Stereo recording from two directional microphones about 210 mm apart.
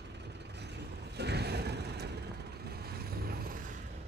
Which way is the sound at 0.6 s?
55° right (ahead or behind).